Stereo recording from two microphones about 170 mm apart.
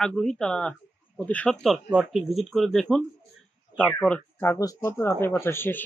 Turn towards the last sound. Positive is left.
turn(degrees=15)  # may be behind; listen again after turning